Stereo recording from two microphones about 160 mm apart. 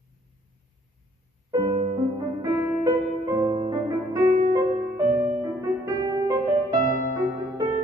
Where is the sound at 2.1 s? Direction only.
20° right (ahead or behind).